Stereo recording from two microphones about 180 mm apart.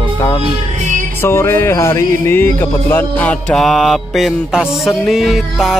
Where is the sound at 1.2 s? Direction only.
15° left (ahead or behind).